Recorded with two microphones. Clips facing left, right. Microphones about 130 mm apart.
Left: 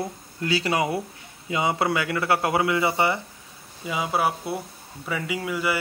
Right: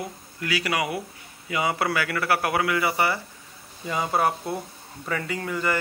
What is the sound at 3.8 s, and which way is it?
Speech, 5° left (ahead or behind).